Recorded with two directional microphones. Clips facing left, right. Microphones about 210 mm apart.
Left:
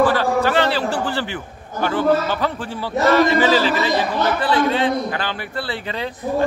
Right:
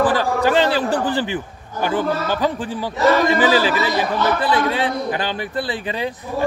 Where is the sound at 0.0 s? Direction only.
15° right (ahead or behind).